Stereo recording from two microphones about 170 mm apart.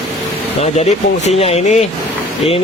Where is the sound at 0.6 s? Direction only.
40° left (ahead or behind).